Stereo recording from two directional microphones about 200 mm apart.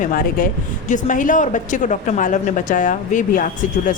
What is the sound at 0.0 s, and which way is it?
A woman's voice, 45° left (ahead or behind).